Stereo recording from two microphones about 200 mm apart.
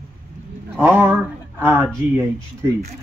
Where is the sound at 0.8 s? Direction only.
10° right (ahead or behind).